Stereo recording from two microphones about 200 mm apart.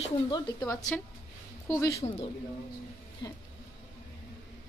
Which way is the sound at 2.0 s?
30° left (ahead or behind).